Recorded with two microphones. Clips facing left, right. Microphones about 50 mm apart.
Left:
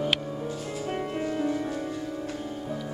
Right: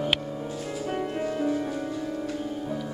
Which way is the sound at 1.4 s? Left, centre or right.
Centre.